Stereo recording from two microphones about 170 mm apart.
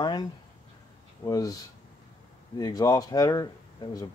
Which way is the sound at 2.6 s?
25° left (ahead or behind).